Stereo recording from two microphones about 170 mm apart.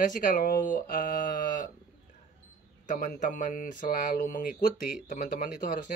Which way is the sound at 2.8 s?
50° left (ahead or behind).